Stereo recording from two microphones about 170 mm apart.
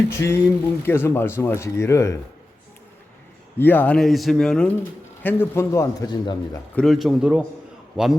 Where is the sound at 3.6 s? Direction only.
10° left (ahead or behind).